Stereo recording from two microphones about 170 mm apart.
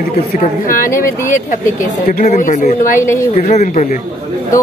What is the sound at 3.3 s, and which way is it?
Speech, 45° left (ahead or behind).